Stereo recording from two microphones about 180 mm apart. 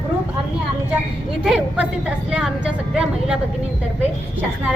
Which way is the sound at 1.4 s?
5° right (ahead or behind).